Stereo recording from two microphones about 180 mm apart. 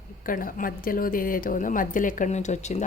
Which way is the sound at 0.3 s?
50° left (ahead or behind).